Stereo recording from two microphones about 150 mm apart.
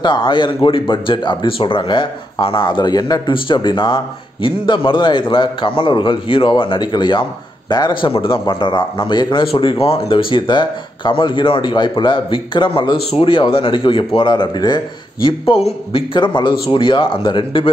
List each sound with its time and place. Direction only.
0.0 s speech: 30° left (ahead or behind)